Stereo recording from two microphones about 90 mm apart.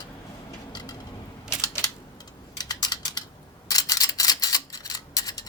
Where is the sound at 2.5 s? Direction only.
50° left (ahead or behind).